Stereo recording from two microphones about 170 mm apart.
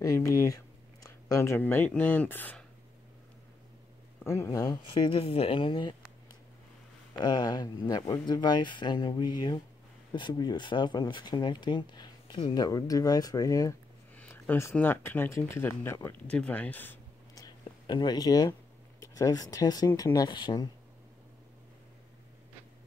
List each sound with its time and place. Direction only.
0.0 s speech: 20° left (ahead or behind)
4.2 s speech: 15° left (ahead or behind)
7.2 s speech: 25° left (ahead or behind)
14.1 s speech: 10° left (ahead or behind)
17.5 s a sound: 25° left (ahead or behind)
20.0 s speech: 25° left (ahead or behind)